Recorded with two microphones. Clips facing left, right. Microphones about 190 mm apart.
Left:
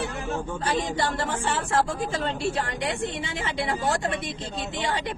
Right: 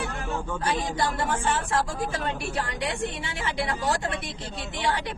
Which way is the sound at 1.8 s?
20° left (ahead or behind).